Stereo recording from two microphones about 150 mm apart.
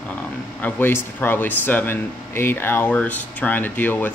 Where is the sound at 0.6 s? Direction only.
10° left (ahead or behind).